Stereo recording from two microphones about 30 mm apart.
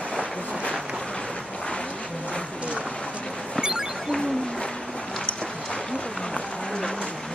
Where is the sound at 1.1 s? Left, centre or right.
Left.